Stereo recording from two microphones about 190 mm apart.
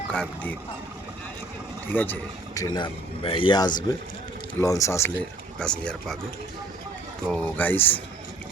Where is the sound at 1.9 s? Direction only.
10° left (ahead or behind).